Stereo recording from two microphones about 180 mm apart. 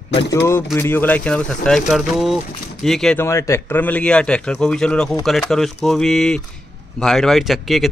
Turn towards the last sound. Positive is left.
turn(degrees=0)  # may be behind; listen again after turning